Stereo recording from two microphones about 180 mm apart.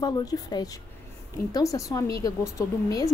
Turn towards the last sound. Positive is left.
turn(degrees=20)  # may be behind; listen again after turning